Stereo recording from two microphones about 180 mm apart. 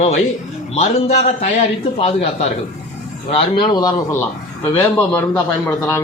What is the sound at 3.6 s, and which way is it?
Speech, 25° left (ahead or behind).